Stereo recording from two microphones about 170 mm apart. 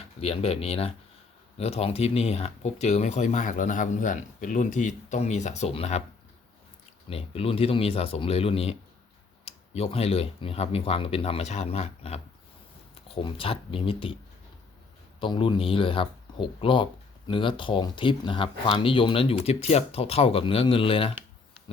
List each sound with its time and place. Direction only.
0.2 s speech: 35° left (ahead or behind)
7.1 s speech: 35° left (ahead or behind)
15.2 s speech: 30° left (ahead or behind)